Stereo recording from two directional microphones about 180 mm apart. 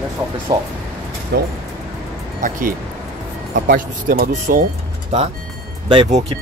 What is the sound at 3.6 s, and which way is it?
Speech, 50° right (ahead or behind).